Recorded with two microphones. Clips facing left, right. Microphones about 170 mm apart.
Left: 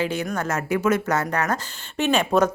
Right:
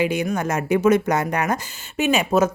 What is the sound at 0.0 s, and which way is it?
A woman's voice, 15° right (ahead or behind).